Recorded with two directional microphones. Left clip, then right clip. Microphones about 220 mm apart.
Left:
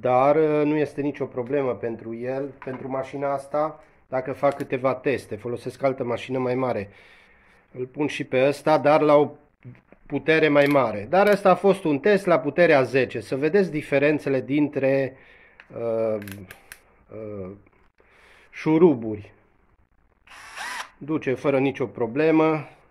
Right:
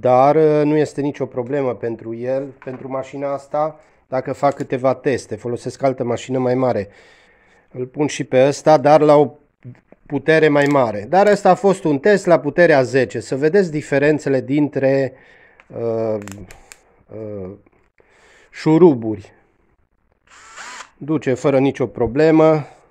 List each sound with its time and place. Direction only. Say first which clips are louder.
0.0 s speech: right 6 dB; 60° right (ahead or behind)
18.5 s speech: right 6 dB; 60° right (ahead or behind)
20.2 s drill: left 1 dB; centre (ahead or behind)
21.0 s speech: right 7 dB; 60° right (ahead or behind)